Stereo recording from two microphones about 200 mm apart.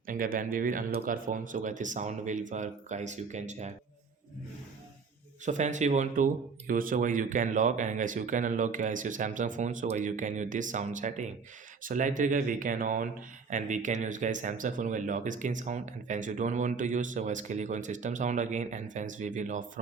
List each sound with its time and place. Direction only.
0.0 s speech: 45° right (ahead or behind)
5.5 s speech: 35° right (ahead or behind)